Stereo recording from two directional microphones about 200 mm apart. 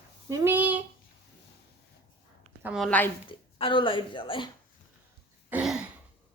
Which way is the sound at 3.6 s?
25° left (ahead or behind).